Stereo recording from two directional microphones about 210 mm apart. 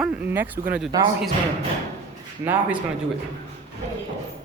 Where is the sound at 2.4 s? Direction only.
10° right (ahead or behind).